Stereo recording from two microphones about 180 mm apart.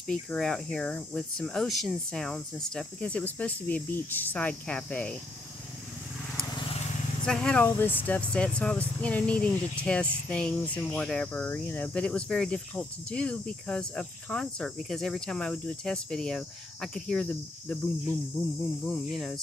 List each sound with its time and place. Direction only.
0.0 s speech: 5° left (ahead or behind)
6.5 s vehicle: 30° left (ahead or behind)
7.2 s speech: 5° left (ahead or behind)